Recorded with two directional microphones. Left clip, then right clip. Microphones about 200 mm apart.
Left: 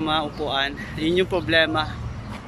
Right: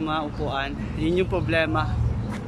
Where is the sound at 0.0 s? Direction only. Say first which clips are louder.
Left 3 dB; centre (ahead or behind).